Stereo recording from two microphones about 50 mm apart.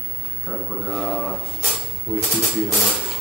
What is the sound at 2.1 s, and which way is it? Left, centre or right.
Speech, right.